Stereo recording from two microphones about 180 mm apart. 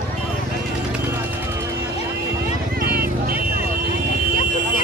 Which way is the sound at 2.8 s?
55° right (ahead or behind).